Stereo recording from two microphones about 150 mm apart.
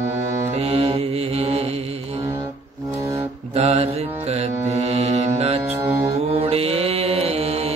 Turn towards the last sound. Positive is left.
turn(degrees=-45)  # may be behind; listen again after turning